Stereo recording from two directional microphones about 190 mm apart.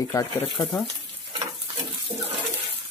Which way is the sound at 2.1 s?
35° right (ahead or behind).